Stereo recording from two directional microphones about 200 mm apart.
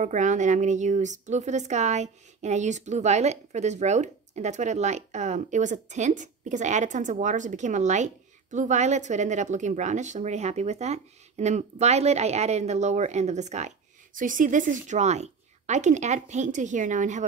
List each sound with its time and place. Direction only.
0.0 s a woman's voice: 40° right (ahead or behind)